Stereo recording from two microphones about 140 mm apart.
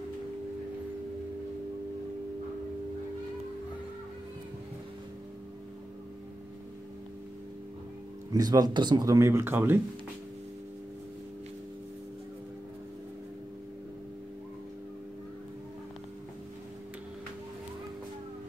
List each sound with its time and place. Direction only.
8.3 s speech: 25° right (ahead or behind)